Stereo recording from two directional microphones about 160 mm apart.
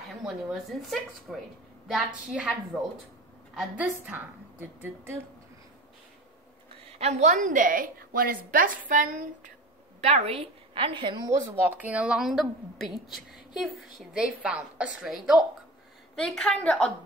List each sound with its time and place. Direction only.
0.2 s a woman's voice: centre (ahead or behind)
6.8 s a woman's voice: 40° right (ahead or behind); by 9.5 s 55° right (ahead or behind)
10.0 s a woman's voice: 40° right (ahead or behind); by 16.9 s 5° left (ahead or behind)